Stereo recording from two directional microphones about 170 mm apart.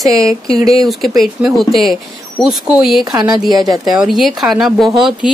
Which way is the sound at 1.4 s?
Centre (ahead or behind).